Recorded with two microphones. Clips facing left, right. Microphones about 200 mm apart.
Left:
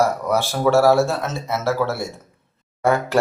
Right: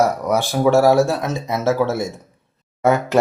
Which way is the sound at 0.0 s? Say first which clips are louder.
Right 2 dB; 15° right (ahead or behind).